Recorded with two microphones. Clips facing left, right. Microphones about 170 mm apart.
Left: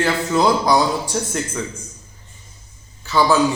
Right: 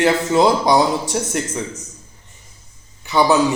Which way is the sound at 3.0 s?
20° right (ahead or behind).